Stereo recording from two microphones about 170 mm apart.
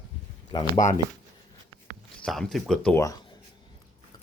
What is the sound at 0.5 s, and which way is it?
Speech, 25° left (ahead or behind).